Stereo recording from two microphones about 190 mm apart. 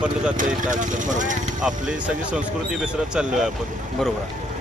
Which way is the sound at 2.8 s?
5° right (ahead or behind).